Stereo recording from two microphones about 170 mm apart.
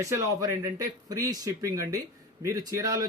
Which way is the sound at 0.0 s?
20° right (ahead or behind).